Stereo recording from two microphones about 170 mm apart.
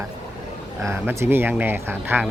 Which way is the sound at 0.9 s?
15° right (ahead or behind).